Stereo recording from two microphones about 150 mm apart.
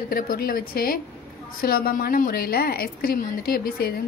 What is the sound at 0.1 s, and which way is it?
A woman's voice, 75° left (ahead or behind).